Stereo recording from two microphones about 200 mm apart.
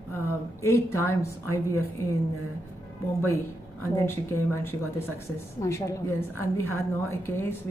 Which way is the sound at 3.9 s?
10° left (ahead or behind).